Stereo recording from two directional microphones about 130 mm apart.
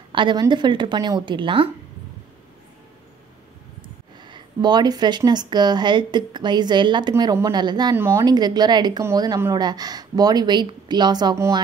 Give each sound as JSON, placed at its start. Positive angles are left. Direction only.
{"t": 0.1, "sound": "speech", "side_deg": -35}
{"t": 4.2, "sound": "speech", "side_deg": -35}
{"t": 7.9, "sound": "speech", "side_deg": -20}